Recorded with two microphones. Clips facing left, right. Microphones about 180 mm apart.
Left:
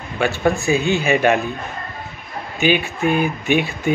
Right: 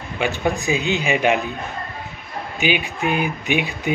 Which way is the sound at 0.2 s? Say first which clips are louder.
Left 3 dB; 15° right (ahead or behind).